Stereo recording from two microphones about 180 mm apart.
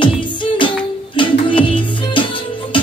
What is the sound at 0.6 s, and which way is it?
Music, 25° left (ahead or behind).